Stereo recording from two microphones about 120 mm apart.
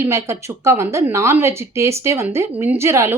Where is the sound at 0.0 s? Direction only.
25° right (ahead or behind).